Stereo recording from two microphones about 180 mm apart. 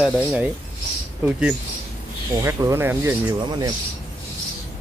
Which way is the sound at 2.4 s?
15° right (ahead or behind).